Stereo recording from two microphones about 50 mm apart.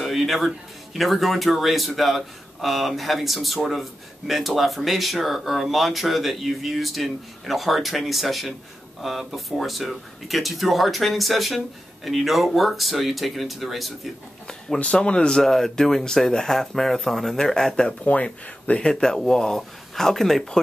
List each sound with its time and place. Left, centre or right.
0.0 s a sound: centre
0.9 s a man's voice: centre
14.8 s speech: left
15.4 s speech: centre
17.8 s speech: left; by 20.5 s centre